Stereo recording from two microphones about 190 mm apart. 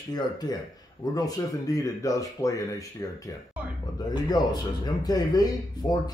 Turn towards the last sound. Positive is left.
turn(degrees=20)  # may be behind; listen again after turning